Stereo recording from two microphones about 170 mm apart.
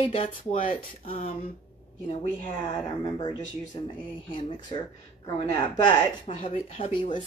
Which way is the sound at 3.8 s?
30° left (ahead or behind).